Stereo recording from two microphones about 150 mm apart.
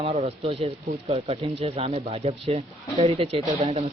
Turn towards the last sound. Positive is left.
turn(degrees=-40)  # may be behind; listen again after turning